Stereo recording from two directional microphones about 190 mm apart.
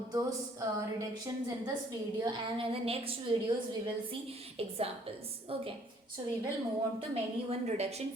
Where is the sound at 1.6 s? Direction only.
20° right (ahead or behind).